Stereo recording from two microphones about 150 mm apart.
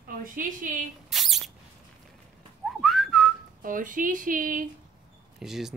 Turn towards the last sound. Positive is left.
turn(degrees=0)  # may be behind; listen again after turning